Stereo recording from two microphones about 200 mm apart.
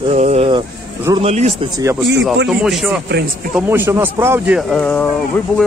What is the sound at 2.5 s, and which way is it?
Speech, centre (ahead or behind).